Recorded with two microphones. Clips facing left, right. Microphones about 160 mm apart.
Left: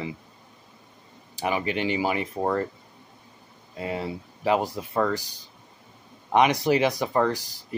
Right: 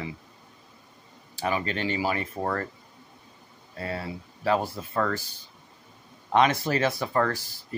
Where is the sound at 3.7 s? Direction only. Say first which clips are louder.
Left 3 dB; 15° left (ahead or behind).